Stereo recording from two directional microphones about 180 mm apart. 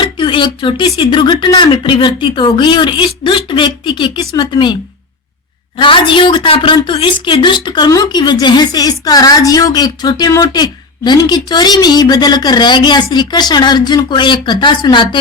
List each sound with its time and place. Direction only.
0.0 s a woman's voice: 25° left (ahead or behind)